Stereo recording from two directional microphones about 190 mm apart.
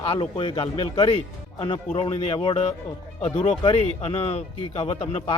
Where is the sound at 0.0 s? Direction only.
30° left (ahead or behind).